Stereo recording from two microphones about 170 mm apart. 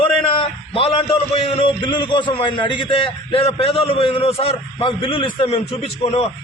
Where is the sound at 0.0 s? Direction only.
30° left (ahead or behind).